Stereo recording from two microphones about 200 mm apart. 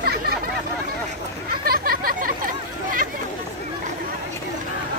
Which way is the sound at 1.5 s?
50° right (ahead or behind).